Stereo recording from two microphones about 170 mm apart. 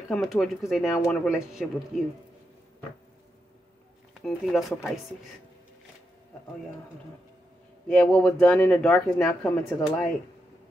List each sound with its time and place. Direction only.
0.1 s speech: 5° left (ahead or behind)
1.9 s speech: 50° left (ahead or behind)
4.2 s speech: centre (ahead or behind)
7.9 s speech: 5° left (ahead or behind)
9.2 s speech: 20° left (ahead or behind)